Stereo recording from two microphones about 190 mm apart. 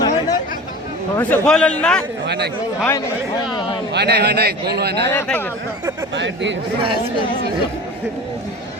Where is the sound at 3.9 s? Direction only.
60° right (ahead or behind).